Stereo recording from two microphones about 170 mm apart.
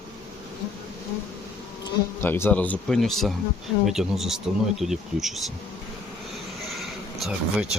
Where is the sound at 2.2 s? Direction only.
10° left (ahead or behind).